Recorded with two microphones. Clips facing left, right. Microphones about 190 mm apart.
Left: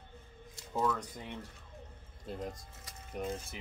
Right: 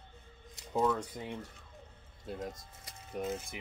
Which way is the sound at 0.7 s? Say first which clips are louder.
Right 3 dB; 25° right (ahead or behind).